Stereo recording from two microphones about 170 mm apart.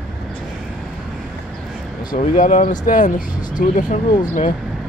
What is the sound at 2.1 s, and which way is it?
Speech, 45° left (ahead or behind).